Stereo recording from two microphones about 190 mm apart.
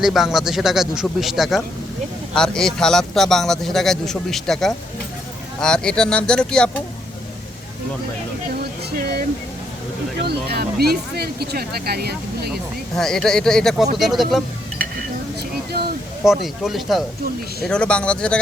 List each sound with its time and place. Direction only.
0.0 s speech: centre (ahead or behind)
10.2 s speech: 55° right (ahead or behind)
13.0 s speech: centre (ahead or behind)
15.4 s a sound: 55° right (ahead or behind)
16.2 s speech: centre (ahead or behind)